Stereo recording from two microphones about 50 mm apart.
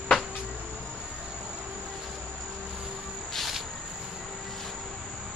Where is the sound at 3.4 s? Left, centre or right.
Centre.